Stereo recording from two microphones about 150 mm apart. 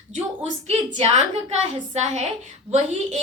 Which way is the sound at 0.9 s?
45° right (ahead or behind).